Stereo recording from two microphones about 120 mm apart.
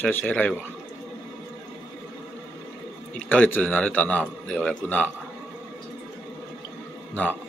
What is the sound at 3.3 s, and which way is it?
A man's voice, 15° left (ahead or behind).